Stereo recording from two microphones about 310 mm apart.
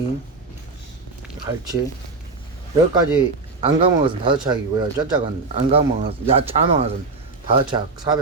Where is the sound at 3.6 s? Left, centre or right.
Centre.